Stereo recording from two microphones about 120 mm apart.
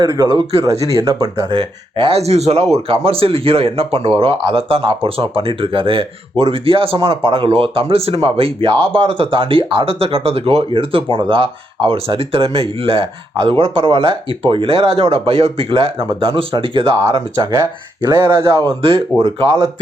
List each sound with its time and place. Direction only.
0.0 s speech: 40° right (ahead or behind)
0.6 s speech: 25° right (ahead or behind)
1.5 s speech: 45° right (ahead or behind); by 18.6 s 25° right (ahead or behind)
18.8 s speech: 50° right (ahead or behind)